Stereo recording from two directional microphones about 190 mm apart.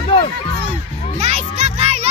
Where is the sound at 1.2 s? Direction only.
35° right (ahead or behind).